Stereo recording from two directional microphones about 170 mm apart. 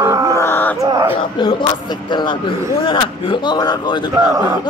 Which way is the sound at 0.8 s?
15° right (ahead or behind).